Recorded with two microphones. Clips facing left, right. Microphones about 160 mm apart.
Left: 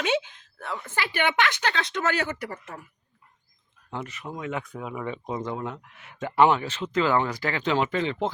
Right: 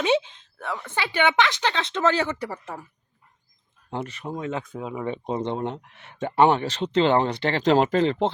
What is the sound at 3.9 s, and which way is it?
Speech, 30° right (ahead or behind).